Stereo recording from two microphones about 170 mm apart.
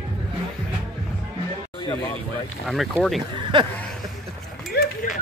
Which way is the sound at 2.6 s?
Centre (ahead or behind).